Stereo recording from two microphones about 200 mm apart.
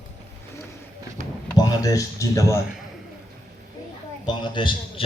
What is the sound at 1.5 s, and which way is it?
Speech, 15° left (ahead or behind).